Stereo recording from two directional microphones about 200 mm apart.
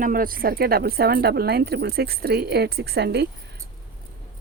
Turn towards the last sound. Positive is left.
turn(degrees=-55)  # may be behind; listen again after turning